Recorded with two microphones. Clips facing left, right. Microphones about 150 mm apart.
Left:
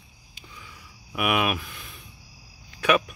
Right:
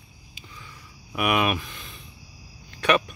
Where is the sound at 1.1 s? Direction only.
5° left (ahead or behind).